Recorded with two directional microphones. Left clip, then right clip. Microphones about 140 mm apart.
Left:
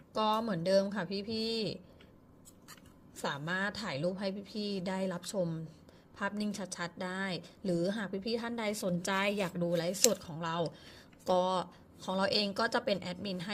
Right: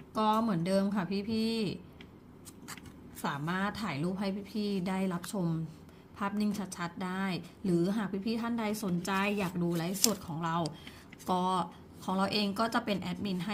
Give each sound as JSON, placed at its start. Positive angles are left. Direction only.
{"t": 0.1, "sound": "a woman's voice", "side_deg": 40}
{"t": 3.2, "sound": "a woman's voice", "side_deg": 40}